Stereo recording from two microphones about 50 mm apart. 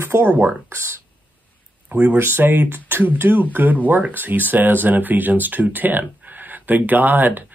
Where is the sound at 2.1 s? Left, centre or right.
Right.